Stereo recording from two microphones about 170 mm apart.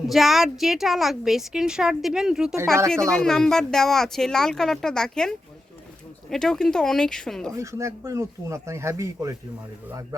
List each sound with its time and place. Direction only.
0.1 s a woman's voice: centre (ahead or behind)
6.3 s a woman's voice: 5° left (ahead or behind)
7.5 s speech: 15° right (ahead or behind)